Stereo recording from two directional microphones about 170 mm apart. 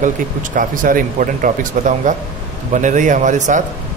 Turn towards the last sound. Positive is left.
turn(degrees=-45)  # may be behind; listen again after turning